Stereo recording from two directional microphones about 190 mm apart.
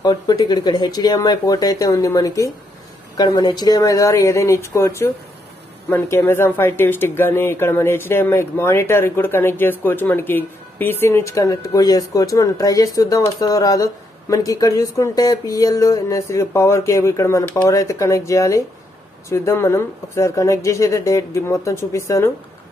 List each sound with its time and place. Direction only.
0.0 s a woman's voice: 20° left (ahead or behind)